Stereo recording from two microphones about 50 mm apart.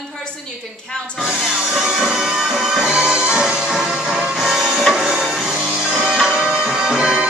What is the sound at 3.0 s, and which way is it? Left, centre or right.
Music, centre.